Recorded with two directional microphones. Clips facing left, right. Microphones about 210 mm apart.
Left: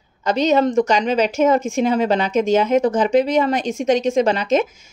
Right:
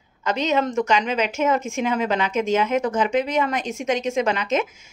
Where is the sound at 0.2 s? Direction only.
35° left (ahead or behind).